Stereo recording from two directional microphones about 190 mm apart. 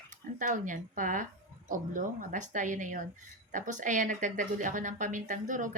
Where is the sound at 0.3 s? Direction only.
45° right (ahead or behind).